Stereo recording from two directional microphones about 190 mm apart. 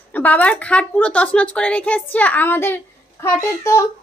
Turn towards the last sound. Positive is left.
turn(degrees=15)  # may be behind; listen again after turning